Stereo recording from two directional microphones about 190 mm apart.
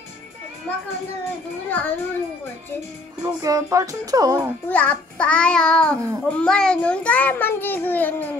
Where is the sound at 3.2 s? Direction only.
20° right (ahead or behind).